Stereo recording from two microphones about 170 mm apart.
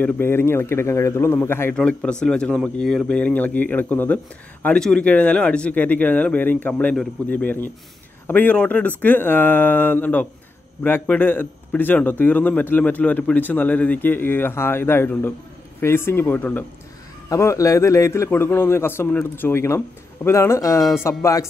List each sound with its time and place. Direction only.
0.0 s a man's voice: 15° left (ahead or behind)